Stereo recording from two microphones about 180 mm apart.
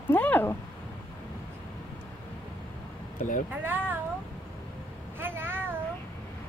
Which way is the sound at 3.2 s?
45° left (ahead or behind).